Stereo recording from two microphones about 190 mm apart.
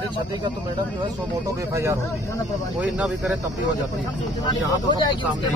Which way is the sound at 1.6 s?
15° right (ahead or behind).